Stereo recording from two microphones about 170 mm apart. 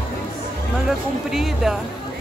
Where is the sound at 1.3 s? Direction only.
Centre (ahead or behind).